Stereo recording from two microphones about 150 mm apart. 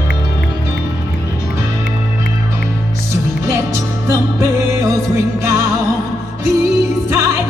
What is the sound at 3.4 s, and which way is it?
Music, 20° right (ahead or behind).